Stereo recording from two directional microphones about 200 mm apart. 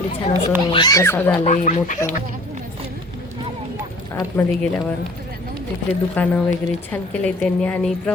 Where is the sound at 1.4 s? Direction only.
35° left (ahead or behind).